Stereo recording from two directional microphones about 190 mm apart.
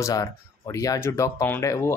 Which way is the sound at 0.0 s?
15° left (ahead or behind).